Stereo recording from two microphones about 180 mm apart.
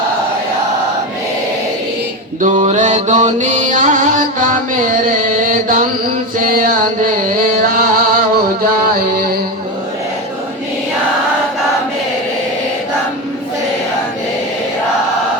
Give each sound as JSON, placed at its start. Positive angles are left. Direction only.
{"t": 2.4, "sound": "mantra", "side_deg": -40}
{"t": 6.4, "sound": "a sound", "side_deg": -50}
{"t": 8.6, "sound": "music", "side_deg": -55}